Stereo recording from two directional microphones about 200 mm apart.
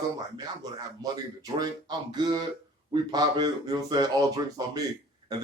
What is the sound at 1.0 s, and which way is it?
Speech, 20° right (ahead or behind).